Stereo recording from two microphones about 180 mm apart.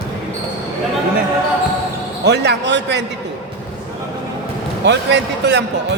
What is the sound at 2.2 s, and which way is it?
Speech, 70° right (ahead or behind).